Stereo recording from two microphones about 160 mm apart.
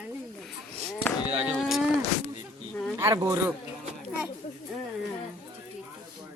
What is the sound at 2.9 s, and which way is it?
Speech, 20° right (ahead or behind).